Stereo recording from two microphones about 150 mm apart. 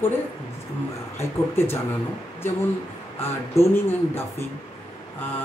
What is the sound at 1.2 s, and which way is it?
Speech, 15° left (ahead or behind).